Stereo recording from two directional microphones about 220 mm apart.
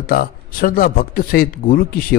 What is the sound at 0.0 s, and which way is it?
Speech, 40° left (ahead or behind).